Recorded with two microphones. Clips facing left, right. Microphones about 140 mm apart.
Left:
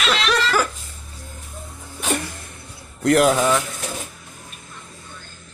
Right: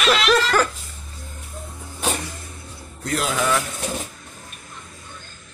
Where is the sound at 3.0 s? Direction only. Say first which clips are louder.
Left 10 dB; 60° left (ahead or behind).